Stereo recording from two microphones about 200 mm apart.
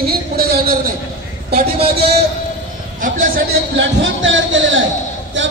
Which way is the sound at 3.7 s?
65° right (ahead or behind).